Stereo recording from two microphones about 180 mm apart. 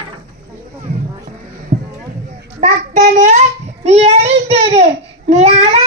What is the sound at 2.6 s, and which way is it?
Child singing, 40° right (ahead or behind).